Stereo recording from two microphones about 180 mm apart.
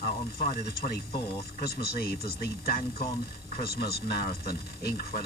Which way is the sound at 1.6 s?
60° left (ahead or behind).